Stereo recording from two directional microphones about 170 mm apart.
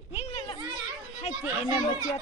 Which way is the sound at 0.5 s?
30° right (ahead or behind).